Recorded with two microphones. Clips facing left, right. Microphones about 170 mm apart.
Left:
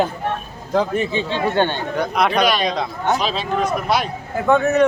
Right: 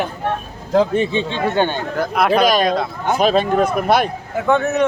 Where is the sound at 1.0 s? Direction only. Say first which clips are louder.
Right 2 dB; 25° right (ahead or behind).